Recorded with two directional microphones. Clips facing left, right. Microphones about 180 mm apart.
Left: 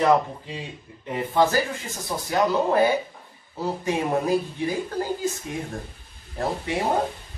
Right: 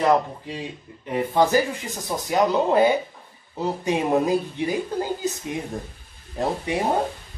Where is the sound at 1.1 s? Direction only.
15° right (ahead or behind).